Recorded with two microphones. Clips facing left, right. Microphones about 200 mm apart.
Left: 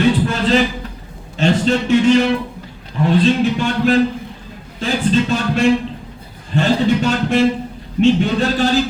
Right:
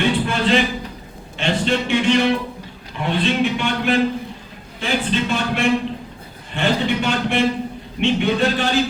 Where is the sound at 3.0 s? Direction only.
40° left (ahead or behind).